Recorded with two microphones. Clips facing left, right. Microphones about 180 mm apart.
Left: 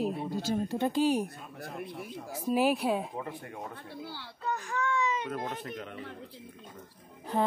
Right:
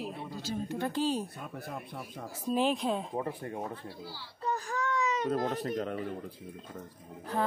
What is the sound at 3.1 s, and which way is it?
Speech, 30° right (ahead or behind).